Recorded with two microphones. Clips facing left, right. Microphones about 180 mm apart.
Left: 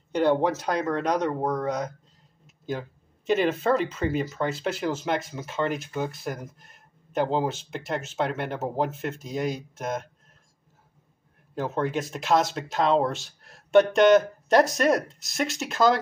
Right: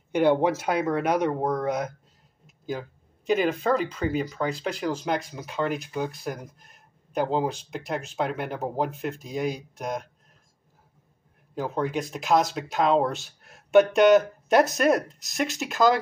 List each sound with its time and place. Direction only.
0.1 s speech: 10° right (ahead or behind)
2.4 s a sound: centre (ahead or behind)
3.6 s speech: centre (ahead or behind)
11.5 s speech: centre (ahead or behind)